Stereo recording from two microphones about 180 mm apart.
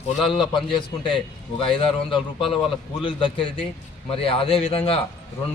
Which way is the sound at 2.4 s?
Centre (ahead or behind).